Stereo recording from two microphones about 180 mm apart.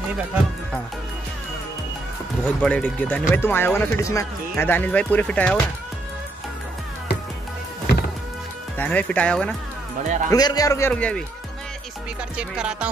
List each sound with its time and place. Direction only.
2.4 s speech: 5° left (ahead or behind)
8.7 s speech: 10° left (ahead or behind)
10.0 s speech: 45° right (ahead or behind)
10.3 s a man's voice: 20° left (ahead or behind)
10.9 s speech: 5° left (ahead or behind)
12.4 s speech: 5° right (ahead or behind)